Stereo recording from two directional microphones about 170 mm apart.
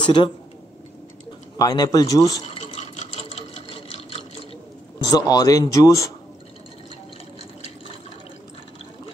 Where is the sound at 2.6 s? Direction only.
40° left (ahead or behind).